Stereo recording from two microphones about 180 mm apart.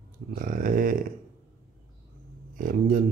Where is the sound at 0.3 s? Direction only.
50° right (ahead or behind).